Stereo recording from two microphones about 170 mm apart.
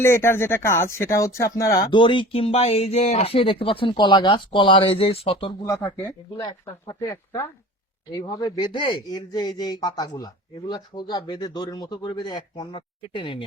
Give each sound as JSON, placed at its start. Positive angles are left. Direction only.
{"t": 0.0, "sound": "speech", "side_deg": 15}
{"t": 5.6, "sound": "speech", "side_deg": 10}
{"t": 6.3, "sound": "speech", "side_deg": 20}